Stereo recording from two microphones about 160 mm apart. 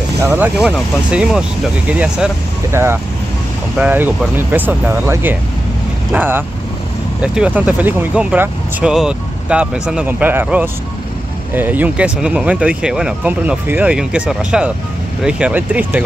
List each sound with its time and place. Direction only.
0.3 s speech: 10° right (ahead or behind)